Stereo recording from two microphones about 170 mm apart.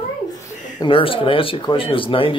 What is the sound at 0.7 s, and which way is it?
Speech, 30° left (ahead or behind).